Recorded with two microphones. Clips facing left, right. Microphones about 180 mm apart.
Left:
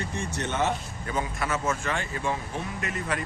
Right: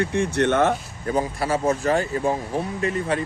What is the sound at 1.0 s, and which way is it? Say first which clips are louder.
Speech: right 7 dB; 35° right (ahead or behind).